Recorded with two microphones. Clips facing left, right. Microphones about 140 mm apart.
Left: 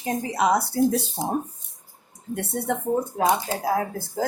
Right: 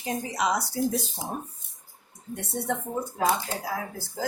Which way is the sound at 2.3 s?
55° left (ahead or behind).